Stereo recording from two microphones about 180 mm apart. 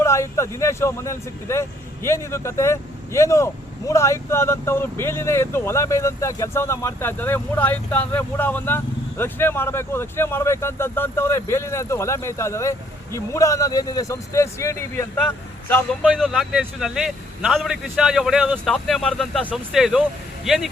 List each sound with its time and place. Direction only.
0.0 s speech: 15° left (ahead or behind)
16.1 s a man's voice: centre (ahead or behind)